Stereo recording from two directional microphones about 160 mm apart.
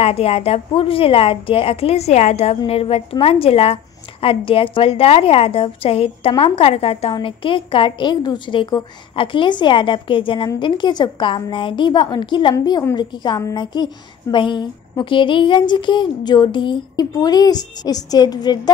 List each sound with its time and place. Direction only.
0.0 s a woman's voice: 40° left (ahead or behind)